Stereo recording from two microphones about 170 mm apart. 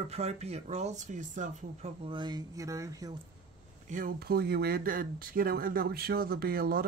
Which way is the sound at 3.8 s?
55° right (ahead or behind).